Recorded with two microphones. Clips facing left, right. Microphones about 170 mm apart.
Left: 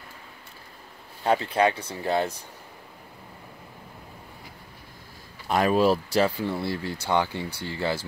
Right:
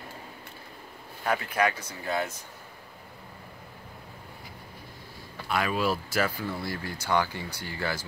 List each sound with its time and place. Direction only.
1.2 s speech: 30° left (ahead or behind)
5.5 s speech: 40° left (ahead or behind)